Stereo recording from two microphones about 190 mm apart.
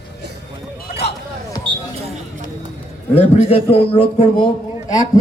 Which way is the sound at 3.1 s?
35° left (ahead or behind).